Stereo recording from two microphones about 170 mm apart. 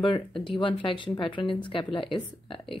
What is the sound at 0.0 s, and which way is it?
A woman's voice, 30° left (ahead or behind).